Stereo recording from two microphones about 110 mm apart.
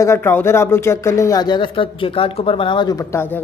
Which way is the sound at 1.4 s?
45° left (ahead or behind).